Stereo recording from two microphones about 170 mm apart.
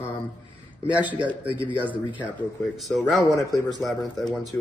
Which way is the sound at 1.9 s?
10° right (ahead or behind).